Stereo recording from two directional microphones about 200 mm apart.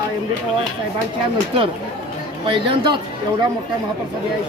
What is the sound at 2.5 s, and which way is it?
Speech, 25° right (ahead or behind).